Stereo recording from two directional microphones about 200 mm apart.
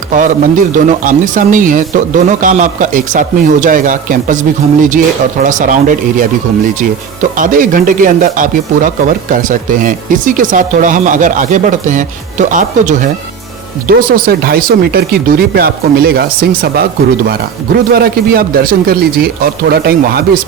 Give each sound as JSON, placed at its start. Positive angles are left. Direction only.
{"t": 0.1, "sound": "speech", "side_deg": -40}
{"t": 5.4, "sound": "speech", "side_deg": -40}
{"t": 7.3, "sound": "speech", "side_deg": -40}
{"t": 17.9, "sound": "speech", "side_deg": -50}